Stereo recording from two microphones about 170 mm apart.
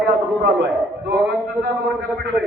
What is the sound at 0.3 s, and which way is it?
Speech, 75° right (ahead or behind).